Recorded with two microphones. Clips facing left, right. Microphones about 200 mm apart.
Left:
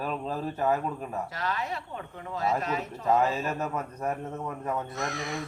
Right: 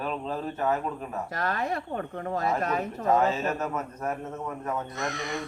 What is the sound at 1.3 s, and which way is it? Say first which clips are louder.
Speech: right 3 dB; 55° right (ahead or behind).